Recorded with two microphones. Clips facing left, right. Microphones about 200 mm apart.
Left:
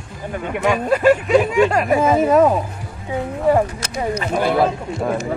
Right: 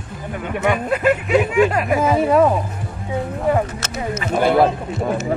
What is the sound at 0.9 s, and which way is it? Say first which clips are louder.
Speech: left 4 dB; 30° left (ahead or behind).